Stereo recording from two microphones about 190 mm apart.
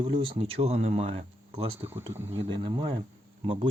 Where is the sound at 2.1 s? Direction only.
10° right (ahead or behind).